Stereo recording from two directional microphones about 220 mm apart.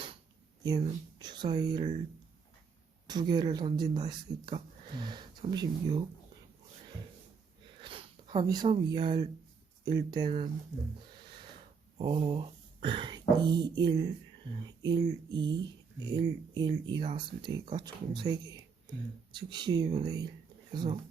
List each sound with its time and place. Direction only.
1.2 s speech: 20° right (ahead or behind)
3.1 s speech: 20° right (ahead or behind)
7.8 s sniff: 25° right (ahead or behind)
8.5 s speech: 25° right (ahead or behind)
11.9 s speech: 20° right (ahead or behind)